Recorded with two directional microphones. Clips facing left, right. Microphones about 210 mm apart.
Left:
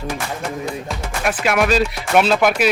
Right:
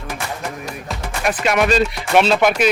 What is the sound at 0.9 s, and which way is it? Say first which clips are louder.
Speech: right 3 dB; centre (ahead or behind).